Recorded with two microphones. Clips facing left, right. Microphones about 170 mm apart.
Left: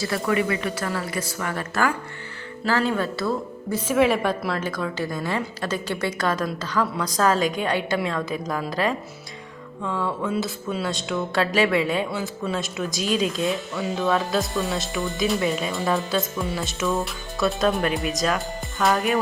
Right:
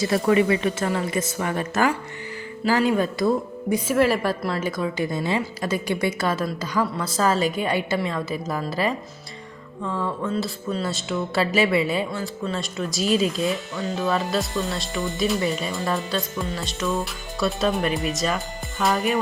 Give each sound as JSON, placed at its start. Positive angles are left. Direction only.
{"t": 0.0, "sound": "a woman's voice", "side_deg": -25}
{"t": 3.9, "sound": "speech", "side_deg": 0}
{"t": 5.1, "sound": "speech", "side_deg": -20}
{"t": 5.6, "sound": "speech", "side_deg": -10}